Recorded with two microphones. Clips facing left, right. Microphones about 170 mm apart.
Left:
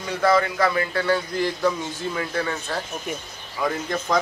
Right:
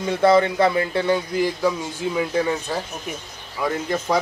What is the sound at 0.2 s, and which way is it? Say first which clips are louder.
Speech: right 4 dB; 25° right (ahead or behind).